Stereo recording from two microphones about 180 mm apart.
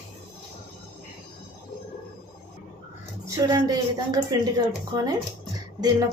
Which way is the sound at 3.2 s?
20° right (ahead or behind).